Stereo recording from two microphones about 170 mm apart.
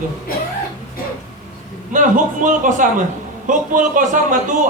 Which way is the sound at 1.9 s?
50° right (ahead or behind).